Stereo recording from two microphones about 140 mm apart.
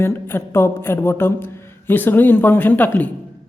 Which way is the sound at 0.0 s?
15° left (ahead or behind).